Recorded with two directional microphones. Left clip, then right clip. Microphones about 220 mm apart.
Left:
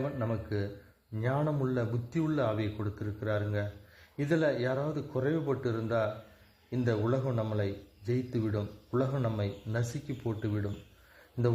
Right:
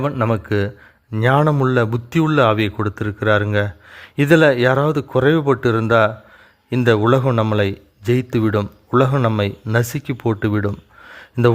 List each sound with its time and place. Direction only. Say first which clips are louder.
0.0 s speech: right 15 dB; 40° right (ahead or behind)